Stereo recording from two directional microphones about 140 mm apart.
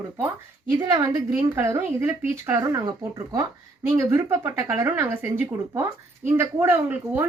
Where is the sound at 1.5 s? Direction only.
20° right (ahead or behind).